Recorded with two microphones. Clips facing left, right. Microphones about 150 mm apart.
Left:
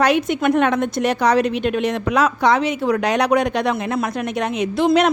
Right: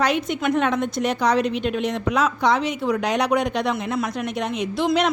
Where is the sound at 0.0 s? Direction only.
65° left (ahead or behind).